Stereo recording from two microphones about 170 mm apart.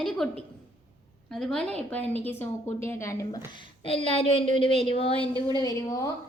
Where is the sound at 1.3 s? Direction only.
5° left (ahead or behind).